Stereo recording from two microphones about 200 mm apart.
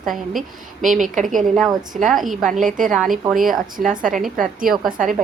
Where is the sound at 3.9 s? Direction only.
40° right (ahead or behind).